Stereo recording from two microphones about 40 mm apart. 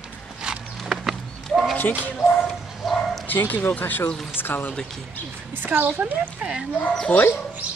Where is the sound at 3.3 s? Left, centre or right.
Left.